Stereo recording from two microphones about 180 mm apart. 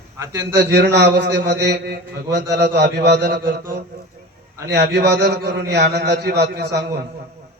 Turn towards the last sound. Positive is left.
turn(degrees=-65)  # may be behind; listen again after turning